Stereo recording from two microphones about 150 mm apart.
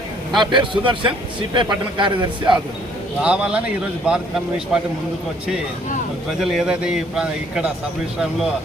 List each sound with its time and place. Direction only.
0.3 s a man's voice: 30° right (ahead or behind)
3.2 s speech: 5° right (ahead or behind)
6.4 s speech: 5° right (ahead or behind)